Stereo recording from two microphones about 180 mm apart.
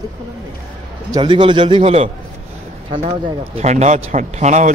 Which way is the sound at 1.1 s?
25° right (ahead or behind).